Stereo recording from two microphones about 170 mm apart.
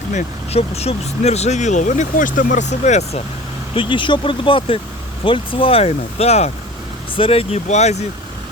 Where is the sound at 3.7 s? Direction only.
30° left (ahead or behind).